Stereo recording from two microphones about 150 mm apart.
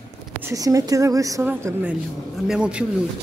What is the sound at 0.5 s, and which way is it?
A woman's voice, 20° right (ahead or behind).